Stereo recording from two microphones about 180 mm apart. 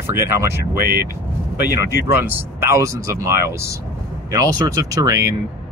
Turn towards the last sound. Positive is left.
turn(degrees=-15)  # may be behind; listen again after turning